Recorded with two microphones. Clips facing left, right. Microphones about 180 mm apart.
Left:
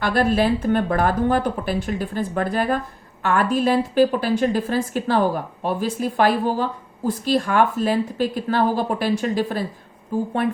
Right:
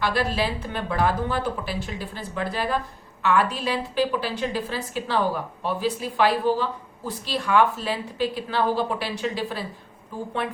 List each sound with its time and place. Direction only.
0.0 s a woman's voice: 50° left (ahead or behind)